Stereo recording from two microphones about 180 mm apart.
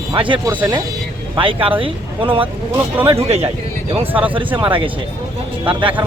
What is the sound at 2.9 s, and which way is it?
Speech, 10° right (ahead or behind).